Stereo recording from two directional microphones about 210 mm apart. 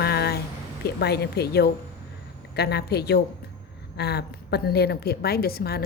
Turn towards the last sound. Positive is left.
turn(degrees=50)  # may be behind; listen again after turning